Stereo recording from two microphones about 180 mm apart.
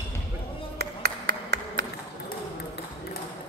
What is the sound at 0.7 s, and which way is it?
Ping, 65° right (ahead or behind).